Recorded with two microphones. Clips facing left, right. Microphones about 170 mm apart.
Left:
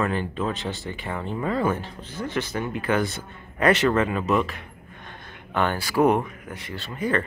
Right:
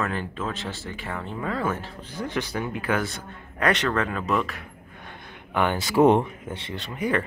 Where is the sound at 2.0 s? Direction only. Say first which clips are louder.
Left 1 dB; 15° right (ahead or behind).